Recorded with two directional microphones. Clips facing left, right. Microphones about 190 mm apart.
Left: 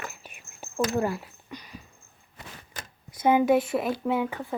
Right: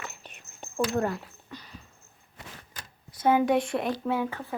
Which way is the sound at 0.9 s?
5° left (ahead or behind).